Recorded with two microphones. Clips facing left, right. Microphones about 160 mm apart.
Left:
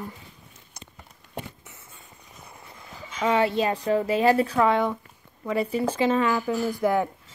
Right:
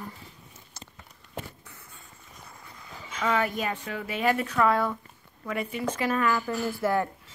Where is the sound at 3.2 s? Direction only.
30° left (ahead or behind).